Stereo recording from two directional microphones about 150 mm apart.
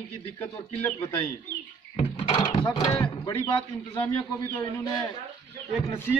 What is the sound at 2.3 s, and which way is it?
Speech, 30° left (ahead or behind).